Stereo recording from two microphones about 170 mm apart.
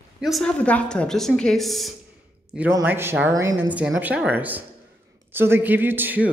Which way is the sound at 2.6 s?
10° right (ahead or behind).